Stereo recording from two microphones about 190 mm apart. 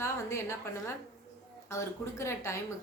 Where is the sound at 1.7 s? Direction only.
15° left (ahead or behind).